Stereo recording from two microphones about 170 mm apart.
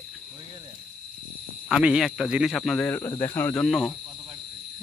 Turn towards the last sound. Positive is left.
turn(degrees=0)  # may be behind; listen again after turning